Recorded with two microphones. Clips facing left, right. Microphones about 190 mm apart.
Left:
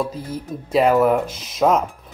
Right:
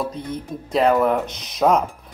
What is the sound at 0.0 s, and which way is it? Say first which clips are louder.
Speech: left 1 dB; 5° left (ahead or behind).